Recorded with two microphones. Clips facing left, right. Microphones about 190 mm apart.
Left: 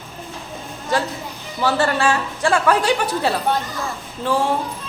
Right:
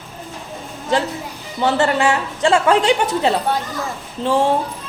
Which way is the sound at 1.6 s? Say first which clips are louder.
Right 2 dB; 20° right (ahead or behind).